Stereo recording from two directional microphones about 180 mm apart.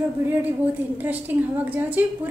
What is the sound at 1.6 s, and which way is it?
Speech, 10° right (ahead or behind).